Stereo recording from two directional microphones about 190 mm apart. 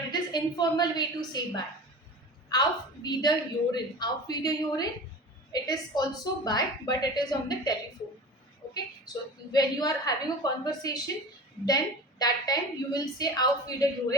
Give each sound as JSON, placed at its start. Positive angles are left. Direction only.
{"t": 0.1, "sound": "a woman's voice", "side_deg": 20}
{"t": 9.5, "sound": "a woman's voice", "side_deg": 20}
{"t": 12.2, "sound": "a woman's voice", "side_deg": 20}